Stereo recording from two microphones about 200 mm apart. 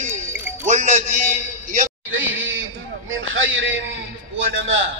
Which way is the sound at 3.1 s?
75° right (ahead or behind).